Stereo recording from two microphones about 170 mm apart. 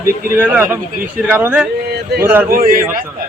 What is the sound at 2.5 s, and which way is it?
Speech, 55° right (ahead or behind).